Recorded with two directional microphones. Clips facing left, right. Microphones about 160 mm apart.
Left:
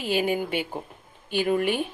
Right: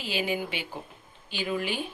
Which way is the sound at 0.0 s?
50° left (ahead or behind).